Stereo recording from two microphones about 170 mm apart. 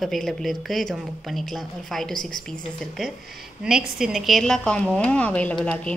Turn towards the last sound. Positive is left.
turn(degrees=5)  # may be behind; listen again after turning